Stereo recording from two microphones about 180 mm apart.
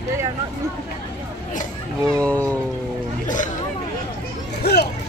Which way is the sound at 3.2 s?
45° left (ahead or behind).